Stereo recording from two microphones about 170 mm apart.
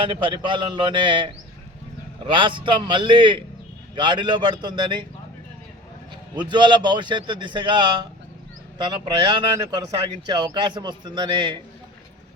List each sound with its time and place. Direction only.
0.0 s speech: 30° right (ahead or behind)
6.3 s speech: 25° right (ahead or behind)